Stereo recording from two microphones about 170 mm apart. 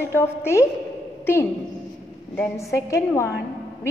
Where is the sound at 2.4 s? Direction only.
15° left (ahead or behind).